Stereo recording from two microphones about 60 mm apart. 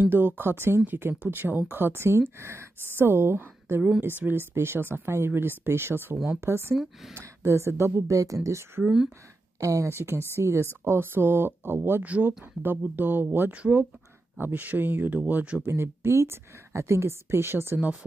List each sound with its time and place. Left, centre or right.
0.1 s a woman's voice: right
6.8 s speech: centre
7.2 s a woman's voice: right
8.1 s speech: right
9.8 s a woman's voice: right
12.0 s speech: right
13.5 s speech: right
15.6 s a woman's voice: right